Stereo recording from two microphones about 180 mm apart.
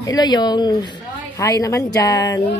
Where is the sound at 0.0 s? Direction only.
20° left (ahead or behind).